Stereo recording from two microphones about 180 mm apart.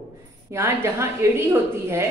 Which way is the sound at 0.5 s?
15° right (ahead or behind).